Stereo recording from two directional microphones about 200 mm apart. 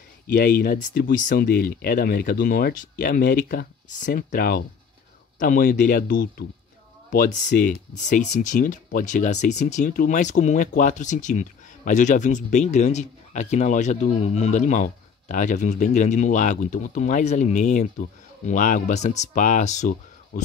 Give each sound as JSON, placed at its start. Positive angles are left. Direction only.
{"t": 0.3, "sound": "speech", "side_deg": 55}